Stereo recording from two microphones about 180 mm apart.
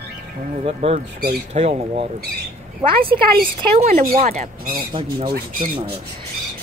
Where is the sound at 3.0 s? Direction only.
55° right (ahead or behind).